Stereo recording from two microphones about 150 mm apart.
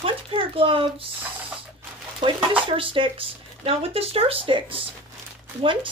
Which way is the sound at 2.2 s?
35° right (ahead or behind).